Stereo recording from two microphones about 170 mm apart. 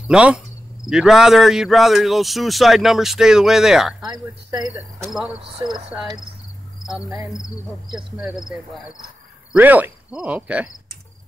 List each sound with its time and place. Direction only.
0.1 s cricket: 5° right (ahead or behind)
0.8 s speech: 5° right (ahead or behind)
4.1 s speech: 25° right (ahead or behind)
5.0 s speech: 5° right (ahead or behind)
5.9 s cricket: 15° right (ahead or behind)
8.3 s speech: 5° right (ahead or behind)
9.5 s cricket: 10° right (ahead or behind)